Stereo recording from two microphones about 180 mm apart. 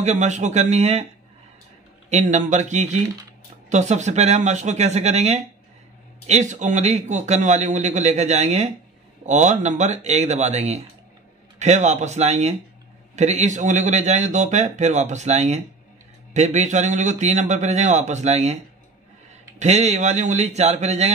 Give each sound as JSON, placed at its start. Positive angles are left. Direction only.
{"t": 0.0, "sound": "a man's voice", "side_deg": -40}
{"t": 2.0, "sound": "a man's voice", "side_deg": -40}
{"t": 19.6, "sound": "a man's voice", "side_deg": -40}